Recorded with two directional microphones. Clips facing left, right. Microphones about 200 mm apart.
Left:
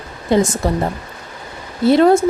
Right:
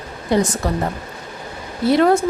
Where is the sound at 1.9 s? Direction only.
25° left (ahead or behind).